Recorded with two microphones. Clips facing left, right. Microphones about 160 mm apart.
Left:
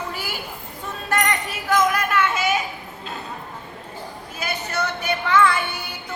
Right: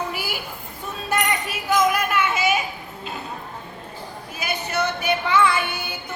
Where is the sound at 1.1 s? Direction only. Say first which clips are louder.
Left 1 dB; 10° right (ahead or behind).